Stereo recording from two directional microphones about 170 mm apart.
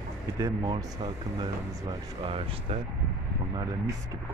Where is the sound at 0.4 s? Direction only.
20° right (ahead or behind).